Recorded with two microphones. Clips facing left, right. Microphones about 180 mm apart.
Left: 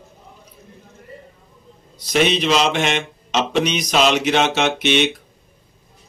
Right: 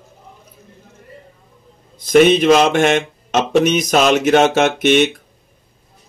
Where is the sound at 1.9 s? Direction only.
50° right (ahead or behind).